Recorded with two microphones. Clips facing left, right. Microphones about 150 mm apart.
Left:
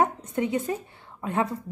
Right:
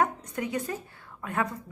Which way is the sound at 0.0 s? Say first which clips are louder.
Left 3 dB; 25° left (ahead or behind).